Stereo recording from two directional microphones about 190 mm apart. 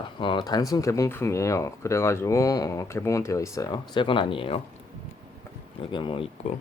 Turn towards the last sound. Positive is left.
turn(degrees=25)  # may be behind; listen again after turning